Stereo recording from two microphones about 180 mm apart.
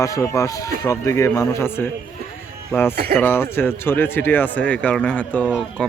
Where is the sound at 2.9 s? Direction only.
55° right (ahead or behind).